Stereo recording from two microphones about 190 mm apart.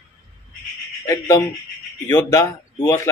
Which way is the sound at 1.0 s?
15° left (ahead or behind).